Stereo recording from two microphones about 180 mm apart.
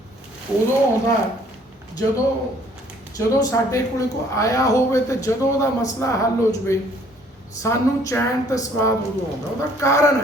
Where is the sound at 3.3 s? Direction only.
20° left (ahead or behind).